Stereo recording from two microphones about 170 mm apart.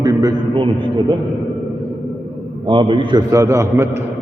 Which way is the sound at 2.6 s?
30° right (ahead or behind).